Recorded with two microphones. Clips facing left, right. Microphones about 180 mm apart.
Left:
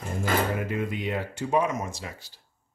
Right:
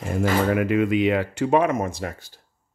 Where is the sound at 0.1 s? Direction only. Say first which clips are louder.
Right 6 dB; 90° right; by 2.4 s 50° right (ahead or behind).